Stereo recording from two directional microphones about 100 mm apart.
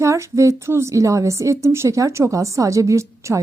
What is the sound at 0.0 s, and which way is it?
A woman's voice, 30° right (ahead or behind).